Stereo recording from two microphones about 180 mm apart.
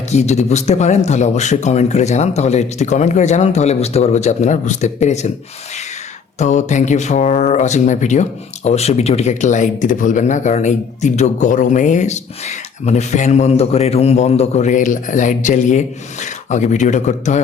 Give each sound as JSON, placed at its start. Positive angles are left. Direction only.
{"t": 0.1, "sound": "speech", "side_deg": 40}
{"t": 6.4, "sound": "speech", "side_deg": 40}